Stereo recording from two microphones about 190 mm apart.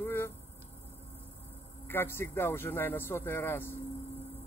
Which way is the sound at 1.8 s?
10° left (ahead or behind).